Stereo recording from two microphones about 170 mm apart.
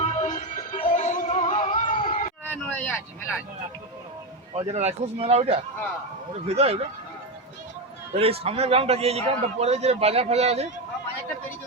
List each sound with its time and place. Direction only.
0.0 s music: 40° left (ahead or behind)
2.5 s vehicle: 10° left (ahead or behind)
4.5 s a man's voice: 40° right (ahead or behind)
8.2 s a man's voice: 35° right (ahead or behind)